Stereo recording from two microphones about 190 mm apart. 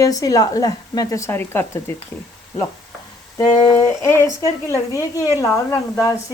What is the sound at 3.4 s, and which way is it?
Speech, 20° left (ahead or behind).